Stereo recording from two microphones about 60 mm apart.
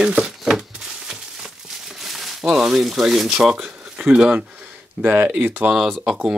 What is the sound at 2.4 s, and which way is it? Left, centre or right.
Speech, centre.